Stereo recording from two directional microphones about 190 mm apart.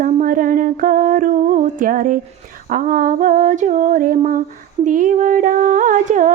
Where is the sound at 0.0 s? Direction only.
45° right (ahead or behind).